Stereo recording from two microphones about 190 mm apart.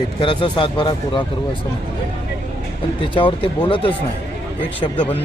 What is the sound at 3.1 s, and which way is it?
Speech, 25° left (ahead or behind).